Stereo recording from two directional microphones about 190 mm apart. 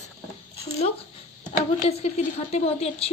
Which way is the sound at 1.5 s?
35° left (ahead or behind).